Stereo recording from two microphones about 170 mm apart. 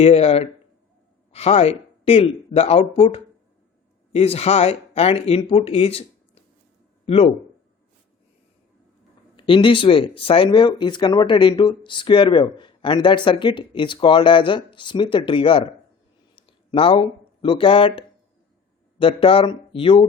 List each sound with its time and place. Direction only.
0.0 s speech: 35° left (ahead or behind)
9.3 s speech: 30° left (ahead or behind)
16.3 s a sound: 30° left (ahead or behind)
17.4 s speech: 30° left (ahead or behind)